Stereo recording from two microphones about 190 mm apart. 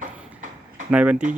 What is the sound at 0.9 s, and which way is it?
Speech, 5° right (ahead or behind).